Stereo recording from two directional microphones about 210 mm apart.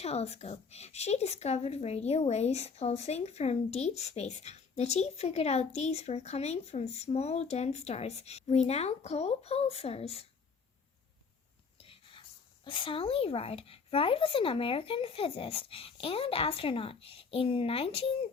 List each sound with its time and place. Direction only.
0.0 s a woman's voice: 30° left (ahead or behind)
11.8 s whispering: 25° left (ahead or behind)
12.6 s speech: 25° left (ahead or behind)